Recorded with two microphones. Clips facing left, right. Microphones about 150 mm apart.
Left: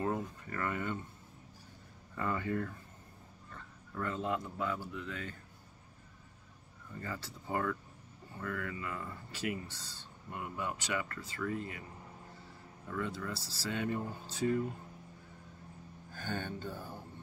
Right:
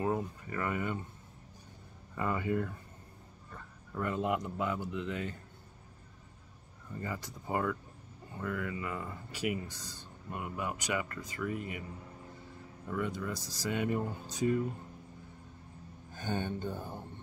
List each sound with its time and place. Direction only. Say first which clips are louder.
0.0 s speech: right 2 dB; 10° right (ahead or behind)
2.1 s speech: right 2 dB; 15° right (ahead or behind)
7.0 s speech: right 3 dB; 15° right (ahead or behind)
12.9 s speech: right 3 dB; 15° right (ahead or behind)
16.1 s speech: right 4 dB; 20° right (ahead or behind)